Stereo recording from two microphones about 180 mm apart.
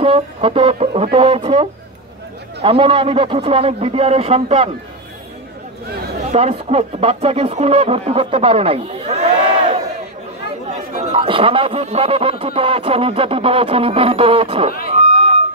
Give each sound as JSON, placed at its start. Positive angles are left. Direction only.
{"t": 0.0, "sound": "speech", "side_deg": -30}
{"t": 6.3, "sound": "speech", "side_deg": -35}
{"t": 14.9, "sound": "a sound", "side_deg": -30}